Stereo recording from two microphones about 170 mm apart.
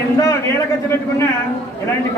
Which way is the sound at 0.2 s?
20° left (ahead or behind).